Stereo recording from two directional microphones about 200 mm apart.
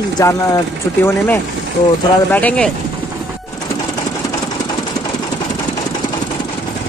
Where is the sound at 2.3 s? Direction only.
5° left (ahead or behind).